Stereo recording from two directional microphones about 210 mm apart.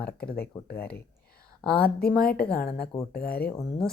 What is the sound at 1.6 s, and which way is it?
Speech, 5° left (ahead or behind).